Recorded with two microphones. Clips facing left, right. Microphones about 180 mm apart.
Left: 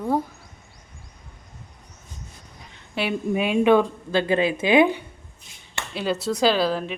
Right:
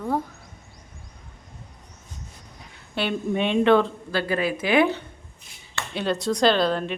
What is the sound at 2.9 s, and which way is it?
Speech, 5° left (ahead or behind).